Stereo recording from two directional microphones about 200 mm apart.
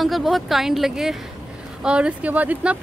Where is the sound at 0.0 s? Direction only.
Centre (ahead or behind).